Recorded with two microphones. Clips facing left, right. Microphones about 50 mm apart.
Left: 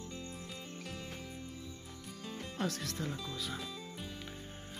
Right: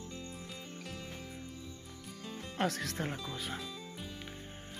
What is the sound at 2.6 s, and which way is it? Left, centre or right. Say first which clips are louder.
Speech: right 4 dB; right.